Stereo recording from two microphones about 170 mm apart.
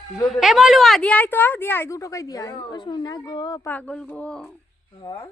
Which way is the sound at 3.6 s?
10° left (ahead or behind).